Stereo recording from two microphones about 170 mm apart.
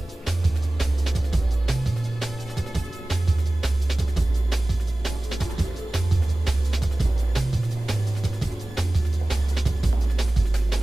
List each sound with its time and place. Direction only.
0.7 s music: centre (ahead or behind)